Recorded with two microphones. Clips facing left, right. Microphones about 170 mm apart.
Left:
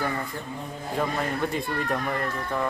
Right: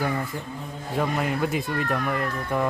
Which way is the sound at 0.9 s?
5° right (ahead or behind).